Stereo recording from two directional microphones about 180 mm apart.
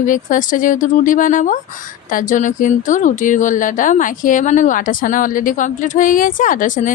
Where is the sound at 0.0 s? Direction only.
45° left (ahead or behind).